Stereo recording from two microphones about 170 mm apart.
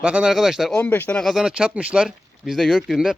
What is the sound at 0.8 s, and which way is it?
Speech, 10° left (ahead or behind).